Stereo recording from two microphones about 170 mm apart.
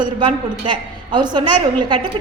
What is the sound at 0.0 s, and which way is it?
A woman's voice, 30° right (ahead or behind).